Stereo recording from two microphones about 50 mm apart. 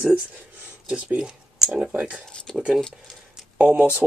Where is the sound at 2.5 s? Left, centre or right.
Centre.